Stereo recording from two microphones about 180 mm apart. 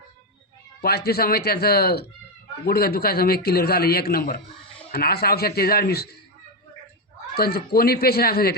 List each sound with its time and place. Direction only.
0.8 s a man's voice: 60° left (ahead or behind)
7.3 s a man's voice: 60° left (ahead or behind)